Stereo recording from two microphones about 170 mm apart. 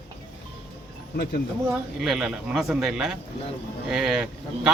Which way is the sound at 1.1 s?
65° left (ahead or behind).